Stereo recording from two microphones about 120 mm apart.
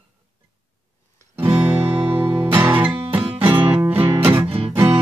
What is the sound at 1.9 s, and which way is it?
Music, 45° right (ahead or behind).